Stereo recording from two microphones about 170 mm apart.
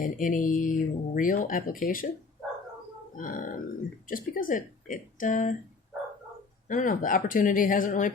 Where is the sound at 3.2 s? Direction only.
50° left (ahead or behind).